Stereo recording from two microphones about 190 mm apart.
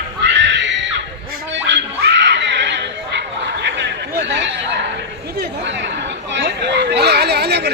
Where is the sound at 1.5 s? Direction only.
70° right (ahead or behind).